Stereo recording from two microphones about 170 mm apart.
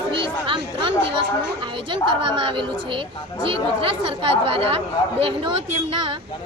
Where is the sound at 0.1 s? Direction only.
30° right (ahead or behind).